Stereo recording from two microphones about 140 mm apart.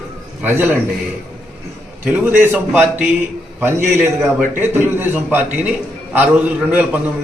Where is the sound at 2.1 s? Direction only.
15° right (ahead or behind).